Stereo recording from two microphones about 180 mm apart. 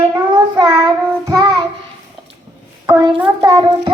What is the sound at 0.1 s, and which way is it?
Child singing, 25° right (ahead or behind).